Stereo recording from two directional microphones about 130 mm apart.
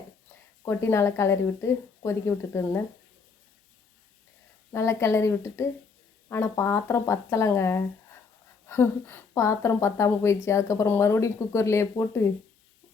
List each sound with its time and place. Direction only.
0.6 s a woman's voice: 20° left (ahead or behind)
4.7 s a woman's voice: 20° left (ahead or behind)